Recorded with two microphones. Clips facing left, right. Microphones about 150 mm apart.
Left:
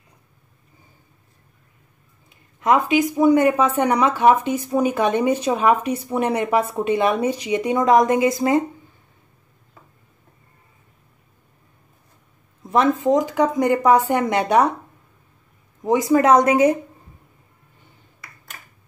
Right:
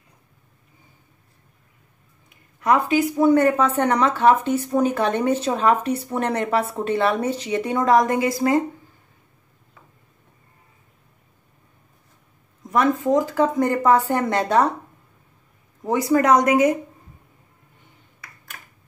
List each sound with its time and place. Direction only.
2.2 s speech: 20° left (ahead or behind)
12.7 s speech: 25° left (ahead or behind)
15.8 s speech: 20° left (ahead or behind)